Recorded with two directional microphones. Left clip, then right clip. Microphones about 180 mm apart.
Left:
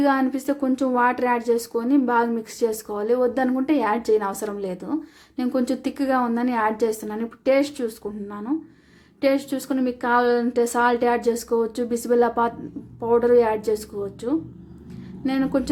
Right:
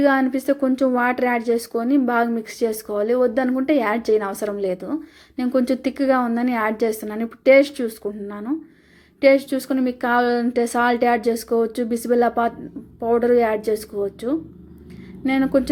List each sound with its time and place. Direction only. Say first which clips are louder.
0.0 s a woman's voice: right 3 dB; 10° right (ahead or behind)